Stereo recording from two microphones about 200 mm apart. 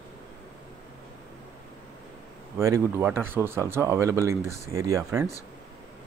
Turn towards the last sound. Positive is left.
turn(degrees=-15)  # may be behind; listen again after turning